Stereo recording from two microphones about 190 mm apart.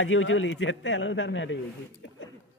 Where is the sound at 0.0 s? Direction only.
90° left.